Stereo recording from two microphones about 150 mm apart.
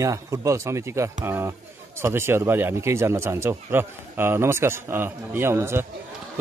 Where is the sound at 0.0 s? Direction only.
20° right (ahead or behind).